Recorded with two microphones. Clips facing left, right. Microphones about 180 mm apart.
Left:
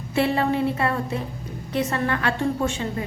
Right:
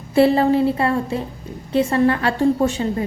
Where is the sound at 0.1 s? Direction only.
35° right (ahead or behind).